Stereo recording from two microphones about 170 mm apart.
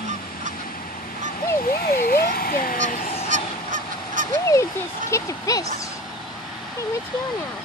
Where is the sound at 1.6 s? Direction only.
60° left (ahead or behind).